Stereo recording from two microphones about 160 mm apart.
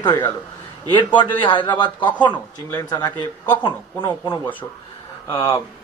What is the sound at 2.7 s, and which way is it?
A man's voice, 25° left (ahead or behind).